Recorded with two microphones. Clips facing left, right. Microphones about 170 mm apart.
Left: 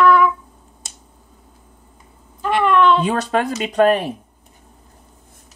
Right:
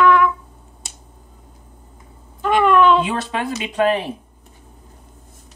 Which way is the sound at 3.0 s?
45° left (ahead or behind).